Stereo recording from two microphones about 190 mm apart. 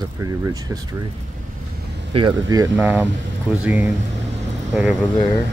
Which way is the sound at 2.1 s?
25° right (ahead or behind).